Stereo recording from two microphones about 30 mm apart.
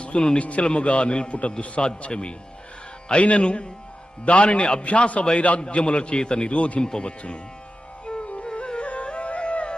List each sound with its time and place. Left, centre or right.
0.3 s a man's voice: left
0.6 s a man's voice: left
5.5 s a man's voice: left
6.8 s speech: left
8.0 s music: left